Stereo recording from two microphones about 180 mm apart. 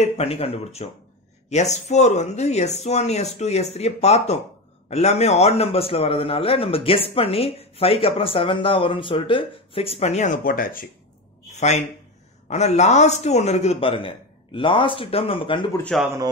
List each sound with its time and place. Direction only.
0.0 s a man's voice: 35° left (ahead or behind); by 10.9 s 50° left (ahead or behind)
11.5 s a sound: 40° left (ahead or behind)
12.4 s a man's voice: 40° left (ahead or behind)
15.8 s speech: centre (ahead or behind)